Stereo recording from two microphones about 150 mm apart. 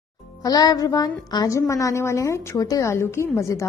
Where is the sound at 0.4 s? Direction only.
25° left (ahead or behind).